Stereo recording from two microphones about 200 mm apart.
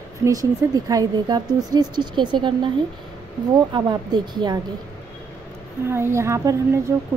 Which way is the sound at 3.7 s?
20° right (ahead or behind).